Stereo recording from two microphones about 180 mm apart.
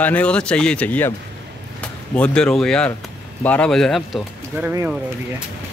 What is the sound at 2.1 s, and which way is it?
Speech, 5° left (ahead or behind).